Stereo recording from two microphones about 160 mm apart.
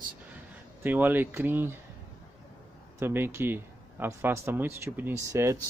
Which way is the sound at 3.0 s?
15° right (ahead or behind).